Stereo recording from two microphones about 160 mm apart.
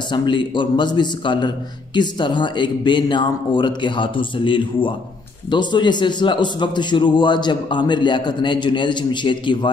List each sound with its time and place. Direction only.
0.1 s a man's voice: 30° left (ahead or behind)